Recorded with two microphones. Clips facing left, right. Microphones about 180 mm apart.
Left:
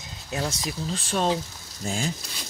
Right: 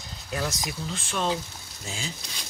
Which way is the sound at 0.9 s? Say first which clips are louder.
Left 4 dB; 35° left (ahead or behind).